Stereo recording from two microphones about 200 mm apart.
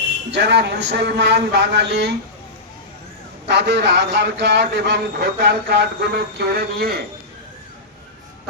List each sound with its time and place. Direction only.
0.3 s a man's voice: 60° right (ahead or behind)
3.4 s a man's voice: 60° right (ahead or behind)